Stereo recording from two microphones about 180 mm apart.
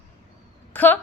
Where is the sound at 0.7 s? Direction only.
10° left (ahead or behind).